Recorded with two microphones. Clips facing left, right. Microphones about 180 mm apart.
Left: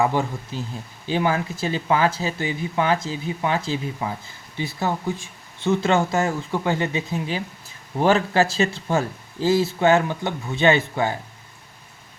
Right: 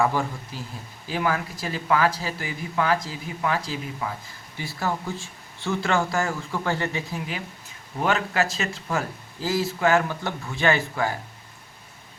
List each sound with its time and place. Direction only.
0.0 s speech: 20° left (ahead or behind)
7.9 s speech: 30° left (ahead or behind)